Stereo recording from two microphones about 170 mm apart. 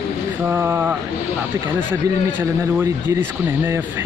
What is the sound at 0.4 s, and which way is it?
Speech, 15° right (ahead or behind).